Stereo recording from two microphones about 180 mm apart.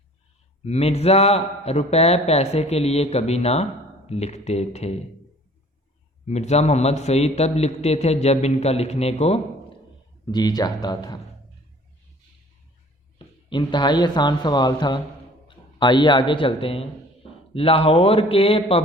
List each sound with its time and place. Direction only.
0.6 s a man's voice: 35° left (ahead or behind)
6.2 s a man's voice: 40° left (ahead or behind)
10.3 s speech: 20° left (ahead or behind)
13.1 s a man's voice: 25° left (ahead or behind)